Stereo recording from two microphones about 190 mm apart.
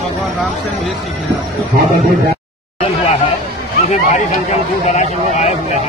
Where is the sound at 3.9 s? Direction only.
35° left (ahead or behind).